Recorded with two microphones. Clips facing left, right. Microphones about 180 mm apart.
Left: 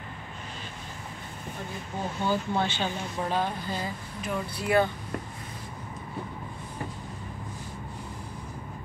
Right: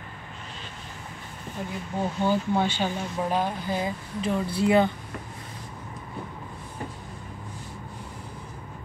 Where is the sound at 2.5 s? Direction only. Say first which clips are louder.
Right 3 dB; 10° right (ahead or behind).